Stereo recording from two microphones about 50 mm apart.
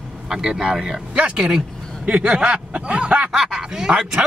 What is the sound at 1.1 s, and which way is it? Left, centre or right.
Speech, right.